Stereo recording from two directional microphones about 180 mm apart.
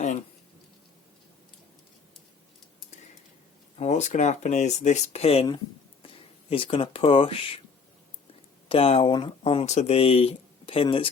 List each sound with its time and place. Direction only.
3.8 s speech: 40° left (ahead or behind)
8.7 s speech: 30° left (ahead or behind)